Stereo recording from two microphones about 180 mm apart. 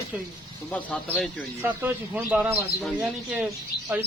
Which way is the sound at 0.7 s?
10° left (ahead or behind).